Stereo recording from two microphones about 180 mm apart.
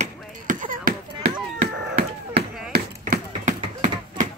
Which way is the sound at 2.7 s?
45° right (ahead or behind).